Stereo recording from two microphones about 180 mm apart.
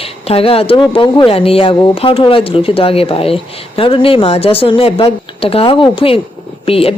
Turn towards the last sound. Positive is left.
turn(degrees=30)  # may be behind; listen again after turning